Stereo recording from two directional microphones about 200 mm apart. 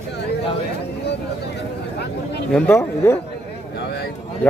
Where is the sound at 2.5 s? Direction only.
10° left (ahead or behind).